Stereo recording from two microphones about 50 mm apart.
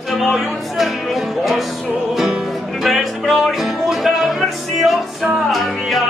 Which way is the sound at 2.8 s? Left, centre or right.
Centre.